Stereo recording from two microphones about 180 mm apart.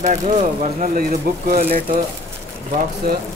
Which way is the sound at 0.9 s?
55° right (ahead or behind).